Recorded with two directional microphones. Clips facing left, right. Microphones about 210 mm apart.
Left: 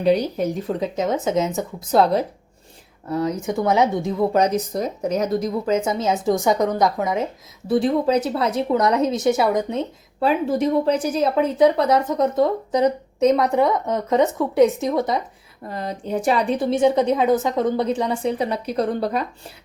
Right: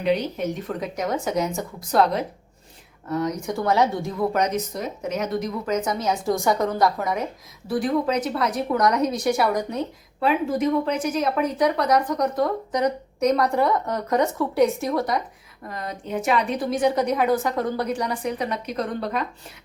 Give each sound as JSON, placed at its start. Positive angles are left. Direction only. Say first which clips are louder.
{"t": 0.0, "sound": "a woman's voice", "louder": "left 4 dB", "side_deg": 35}
{"t": 3.6, "sound": "a woman's voice", "louder": "left 2 dB", "side_deg": 20}